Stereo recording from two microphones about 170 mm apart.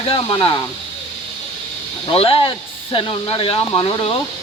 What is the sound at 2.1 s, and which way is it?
Speech, 35° left (ahead or behind).